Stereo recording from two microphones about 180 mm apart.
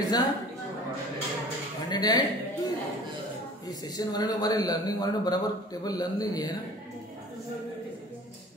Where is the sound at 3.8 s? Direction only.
20° left (ahead or behind).